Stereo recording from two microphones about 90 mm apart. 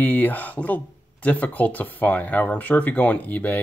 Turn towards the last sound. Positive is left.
turn(degrees=20)  # may be behind; listen again after turning